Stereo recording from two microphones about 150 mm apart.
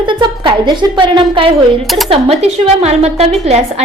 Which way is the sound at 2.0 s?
45° right (ahead or behind).